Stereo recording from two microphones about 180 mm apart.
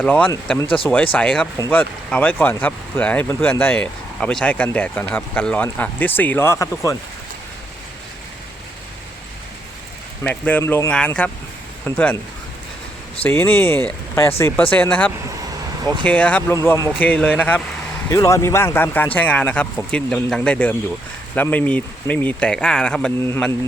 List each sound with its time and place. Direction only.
0.0 s speech: 10° left (ahead or behind)
10.2 s speech: 10° left (ahead or behind)
13.2 s speech: 10° left (ahead or behind)
16.6 s speech: 15° left (ahead or behind)